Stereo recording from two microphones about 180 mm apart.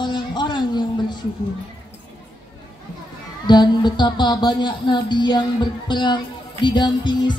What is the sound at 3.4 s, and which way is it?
Speech, 25° left (ahead or behind).